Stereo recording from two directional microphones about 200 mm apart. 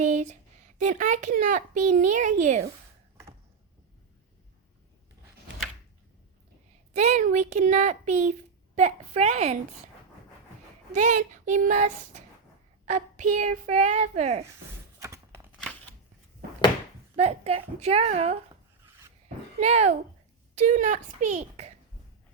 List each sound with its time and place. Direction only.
0.0 s a sound: 35° right (ahead or behind)
0.8 s a child's voice: 40° right (ahead or behind)
6.9 s a child's voice: 35° right (ahead or behind)
10.9 s a child's voice: 35° right (ahead or behind)
14.9 s a sound: 15° right (ahead or behind)
17.2 s a child's voice: 30° right (ahead or behind)
19.5 s a child's voice: 35° right (ahead or behind)